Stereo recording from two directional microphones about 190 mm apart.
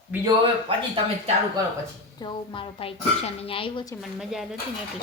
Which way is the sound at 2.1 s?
25° left (ahead or behind).